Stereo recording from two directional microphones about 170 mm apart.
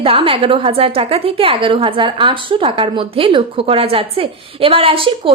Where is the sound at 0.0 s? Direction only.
35° right (ahead or behind).